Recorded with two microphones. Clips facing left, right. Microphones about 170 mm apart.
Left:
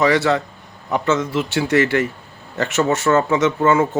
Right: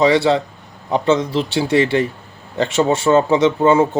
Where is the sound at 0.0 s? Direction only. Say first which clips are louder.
Right 3 dB; 30° right (ahead or behind).